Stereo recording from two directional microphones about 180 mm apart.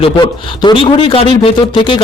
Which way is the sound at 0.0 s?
25° left (ahead or behind).